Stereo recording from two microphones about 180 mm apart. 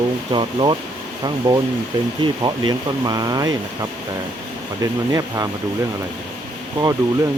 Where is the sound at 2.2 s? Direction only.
20° right (ahead or behind).